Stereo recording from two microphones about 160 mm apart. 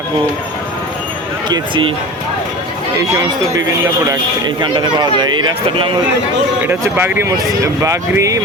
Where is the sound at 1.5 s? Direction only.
30° right (ahead or behind).